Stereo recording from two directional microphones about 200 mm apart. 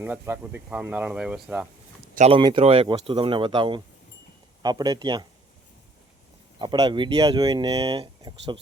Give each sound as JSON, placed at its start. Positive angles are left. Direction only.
{"t": 0.0, "sound": "speech", "side_deg": -10}
{"t": 2.1, "sound": "speech", "side_deg": -35}
{"t": 6.6, "sound": "speech", "side_deg": -20}